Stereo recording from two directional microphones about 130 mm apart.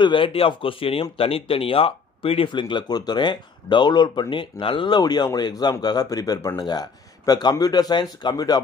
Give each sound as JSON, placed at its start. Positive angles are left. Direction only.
{"t": 0.0, "sound": "speech", "side_deg": 40}